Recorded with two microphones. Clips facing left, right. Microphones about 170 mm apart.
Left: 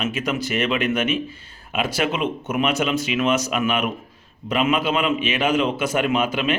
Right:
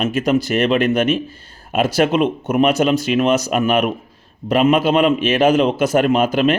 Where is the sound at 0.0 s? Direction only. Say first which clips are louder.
Right 7 dB; 40° right (ahead or behind).